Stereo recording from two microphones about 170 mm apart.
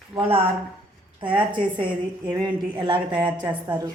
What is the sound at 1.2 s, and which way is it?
A woman's voice, 30° right (ahead or behind).